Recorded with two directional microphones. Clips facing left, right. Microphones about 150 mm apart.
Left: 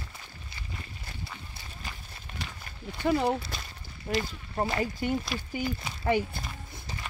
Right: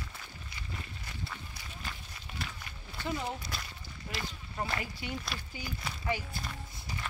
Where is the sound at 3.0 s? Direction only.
65° left (ahead or behind).